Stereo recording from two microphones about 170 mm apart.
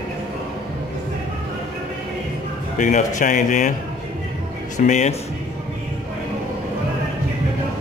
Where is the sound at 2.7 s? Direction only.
50° left (ahead or behind).